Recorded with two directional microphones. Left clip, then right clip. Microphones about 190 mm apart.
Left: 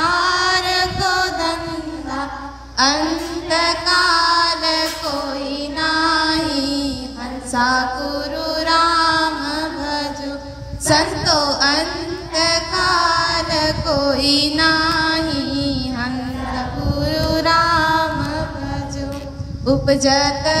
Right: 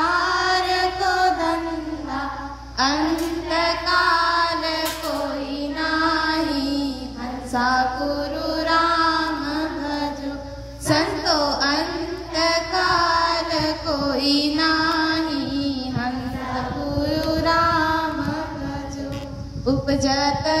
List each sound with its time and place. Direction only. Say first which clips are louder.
0.0 s music: left 3 dB; 45° left (ahead or behind)
2.8 s child singing: left 4 dB; 45° left (ahead or behind)
5.8 s music: left 4 dB; 45° left (ahead or behind)
10.9 s a sound: left 4 dB; 40° left (ahead or behind)
12.4 s child singing: left 2 dB; 40° left (ahead or behind)
17.0 s music: left 4 dB; 40° left (ahead or behind)
19.6 s a sound: left 6 dB; 40° left (ahead or behind)